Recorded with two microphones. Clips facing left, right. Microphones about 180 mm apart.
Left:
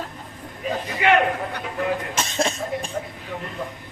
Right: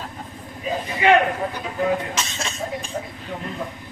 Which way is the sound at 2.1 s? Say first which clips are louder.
Left 5 dB; 55° left (ahead or behind).